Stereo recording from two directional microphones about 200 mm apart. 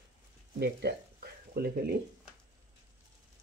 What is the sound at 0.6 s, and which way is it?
Speech, 55° right (ahead or behind).